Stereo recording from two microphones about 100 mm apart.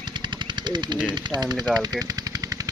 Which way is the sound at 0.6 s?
50° right (ahead or behind).